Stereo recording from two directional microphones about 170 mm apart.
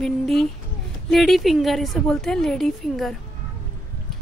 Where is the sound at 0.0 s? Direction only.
Centre (ahead or behind).